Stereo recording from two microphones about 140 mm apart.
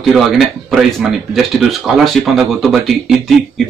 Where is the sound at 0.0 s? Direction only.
Centre (ahead or behind).